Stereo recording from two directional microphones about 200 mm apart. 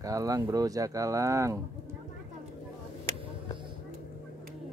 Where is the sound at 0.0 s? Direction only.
15° right (ahead or behind).